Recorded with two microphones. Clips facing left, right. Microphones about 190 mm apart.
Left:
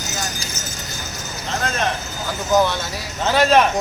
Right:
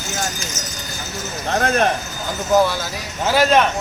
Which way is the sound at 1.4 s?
55° right (ahead or behind).